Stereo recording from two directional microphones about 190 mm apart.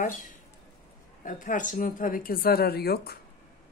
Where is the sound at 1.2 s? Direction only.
45° left (ahead or behind).